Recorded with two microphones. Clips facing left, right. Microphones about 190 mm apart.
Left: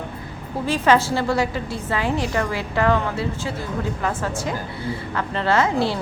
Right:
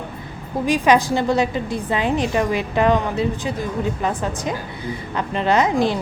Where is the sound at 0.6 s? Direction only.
15° right (ahead or behind).